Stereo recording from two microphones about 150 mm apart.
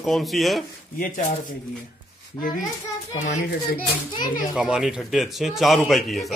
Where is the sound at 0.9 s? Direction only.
65° left (ahead or behind).